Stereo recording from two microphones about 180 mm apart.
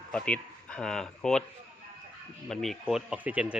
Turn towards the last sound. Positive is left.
turn(degrees=-5)  # may be behind; listen again after turning